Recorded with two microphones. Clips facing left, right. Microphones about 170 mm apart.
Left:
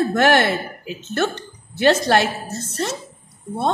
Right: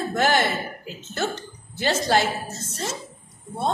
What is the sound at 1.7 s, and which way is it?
Speech, 65° left (ahead or behind).